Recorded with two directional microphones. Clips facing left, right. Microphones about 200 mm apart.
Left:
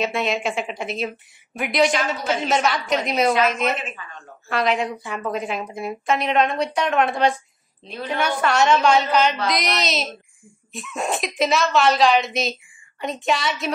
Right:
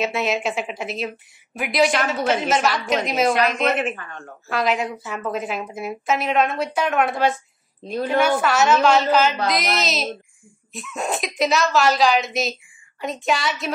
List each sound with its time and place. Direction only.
0.0 s a woman's voice: centre (ahead or behind)
3.7 s speech: 55° right (ahead or behind)
4.5 s a woman's voice: centre (ahead or behind)
7.8 s a woman's voice: 45° right (ahead or behind)
8.4 s a woman's voice: 5° right (ahead or behind)